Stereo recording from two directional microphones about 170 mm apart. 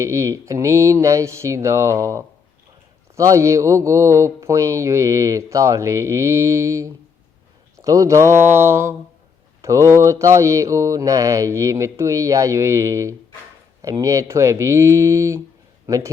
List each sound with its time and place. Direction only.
0.0 s speech: 15° right (ahead or behind)